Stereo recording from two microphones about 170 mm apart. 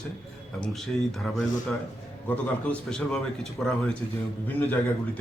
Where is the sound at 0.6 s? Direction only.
Centre (ahead or behind).